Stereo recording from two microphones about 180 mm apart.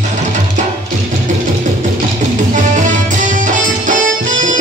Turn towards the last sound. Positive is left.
turn(degrees=-45)  # may be behind; listen again after turning